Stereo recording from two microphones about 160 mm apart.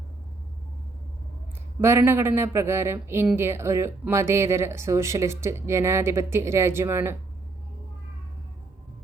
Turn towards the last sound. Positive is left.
turn(degrees=-15)  # may be behind; listen again after turning